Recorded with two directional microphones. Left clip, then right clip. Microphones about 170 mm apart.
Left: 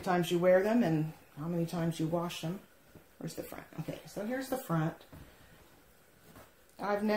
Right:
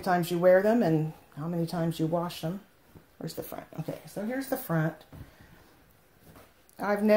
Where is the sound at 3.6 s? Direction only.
35° right (ahead or behind).